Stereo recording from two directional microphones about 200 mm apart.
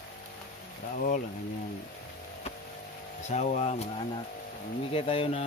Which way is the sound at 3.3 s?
35° left (ahead or behind).